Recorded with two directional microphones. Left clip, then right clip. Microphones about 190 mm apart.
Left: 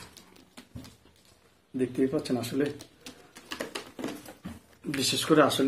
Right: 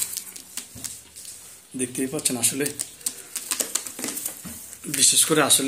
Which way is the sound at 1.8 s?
5° right (ahead or behind).